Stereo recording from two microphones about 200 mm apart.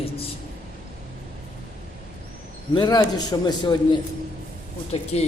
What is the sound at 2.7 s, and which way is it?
A man's voice, 20° left (ahead or behind).